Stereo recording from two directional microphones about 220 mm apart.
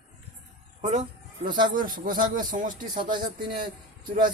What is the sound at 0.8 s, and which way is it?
Speech, 30° right (ahead or behind).